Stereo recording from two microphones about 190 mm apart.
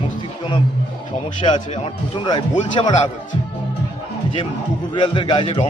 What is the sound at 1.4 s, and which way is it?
Speech, 30° left (ahead or behind).